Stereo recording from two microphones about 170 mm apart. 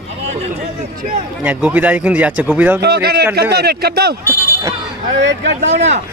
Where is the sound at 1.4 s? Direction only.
10° right (ahead or behind).